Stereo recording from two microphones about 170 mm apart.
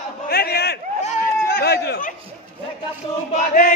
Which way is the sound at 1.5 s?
70° left (ahead or behind).